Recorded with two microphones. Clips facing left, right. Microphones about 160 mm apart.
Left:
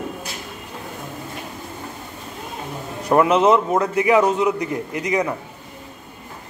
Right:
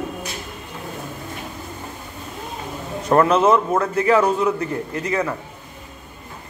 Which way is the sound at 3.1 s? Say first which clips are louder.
Even; 15° left (ahead or behind).